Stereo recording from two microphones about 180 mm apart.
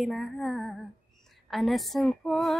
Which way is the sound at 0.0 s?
Centre (ahead or behind).